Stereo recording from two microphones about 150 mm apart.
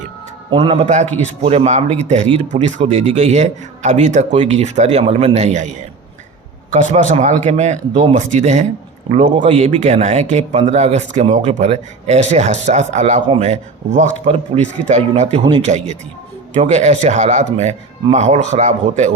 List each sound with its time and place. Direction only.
0.5 s a man's voice: 35° right (ahead or behind)